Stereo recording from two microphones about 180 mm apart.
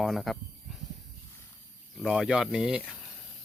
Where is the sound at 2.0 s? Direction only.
Centre (ahead or behind).